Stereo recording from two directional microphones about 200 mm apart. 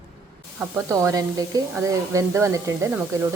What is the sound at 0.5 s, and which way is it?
A woman's voice, 15° right (ahead or behind).